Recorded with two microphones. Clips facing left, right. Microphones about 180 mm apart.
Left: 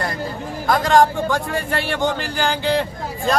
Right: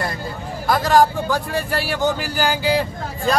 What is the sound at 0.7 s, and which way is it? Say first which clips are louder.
Speech: even; 5° right (ahead or behind).